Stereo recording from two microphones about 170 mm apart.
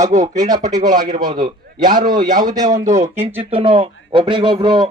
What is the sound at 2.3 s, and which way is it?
Speech, 50° right (ahead or behind).